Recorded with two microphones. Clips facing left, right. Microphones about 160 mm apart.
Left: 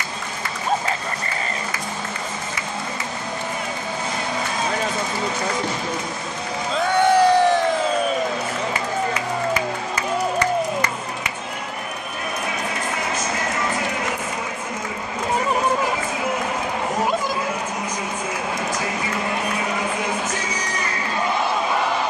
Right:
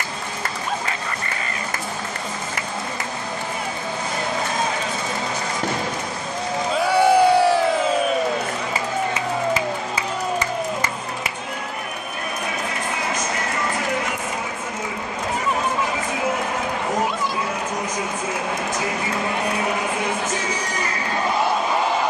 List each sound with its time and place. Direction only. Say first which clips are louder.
6.8 s crowd: even; 10° right (ahead or behind)